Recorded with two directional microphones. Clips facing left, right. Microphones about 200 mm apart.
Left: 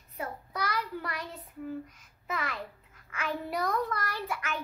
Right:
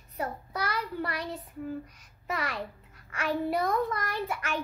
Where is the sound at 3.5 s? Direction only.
25° right (ahead or behind).